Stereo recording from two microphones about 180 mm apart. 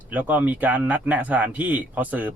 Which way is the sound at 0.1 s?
10° right (ahead or behind).